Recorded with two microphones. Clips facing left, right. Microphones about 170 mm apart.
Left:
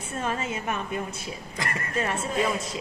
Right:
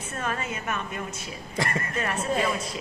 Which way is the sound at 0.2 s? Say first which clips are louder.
Left 2 dB; 25° left (ahead or behind).